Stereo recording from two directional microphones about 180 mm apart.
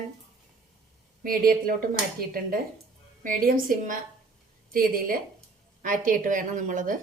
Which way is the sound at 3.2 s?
50° right (ahead or behind).